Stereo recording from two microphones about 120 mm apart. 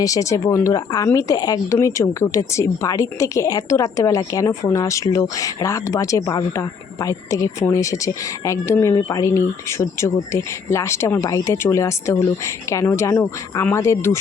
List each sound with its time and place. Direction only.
0.0 s a woman's voice: 30° left (ahead or behind)